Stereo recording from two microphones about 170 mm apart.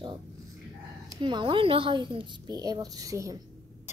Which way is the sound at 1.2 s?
30° right (ahead or behind).